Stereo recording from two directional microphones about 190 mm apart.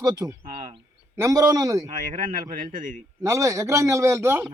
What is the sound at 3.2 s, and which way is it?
Speech, 15° right (ahead or behind).